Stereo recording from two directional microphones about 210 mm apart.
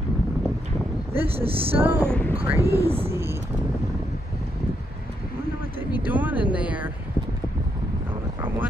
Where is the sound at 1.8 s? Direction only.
10° right (ahead or behind).